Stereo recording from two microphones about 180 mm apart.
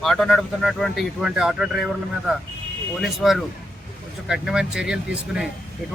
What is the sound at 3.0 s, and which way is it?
Speech, centre (ahead or behind).